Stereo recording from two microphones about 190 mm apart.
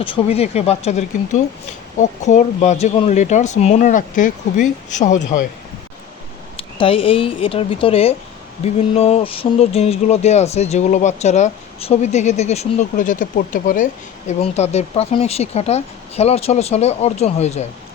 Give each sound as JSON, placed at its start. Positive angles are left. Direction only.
{"t": 0.0, "sound": "speech", "side_deg": 30}
{"t": 6.6, "sound": "speech", "side_deg": 30}